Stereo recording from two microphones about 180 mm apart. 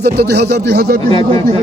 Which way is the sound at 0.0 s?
65° right (ahead or behind).